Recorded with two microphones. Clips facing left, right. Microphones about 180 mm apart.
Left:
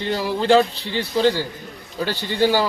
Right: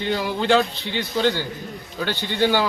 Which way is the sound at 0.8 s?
35° left (ahead or behind).